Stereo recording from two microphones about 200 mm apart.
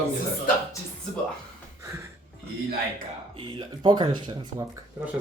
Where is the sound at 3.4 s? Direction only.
25° right (ahead or behind).